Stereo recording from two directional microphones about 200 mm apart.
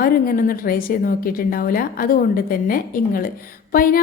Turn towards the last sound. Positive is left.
turn(degrees=45)  # may be behind; listen again after turning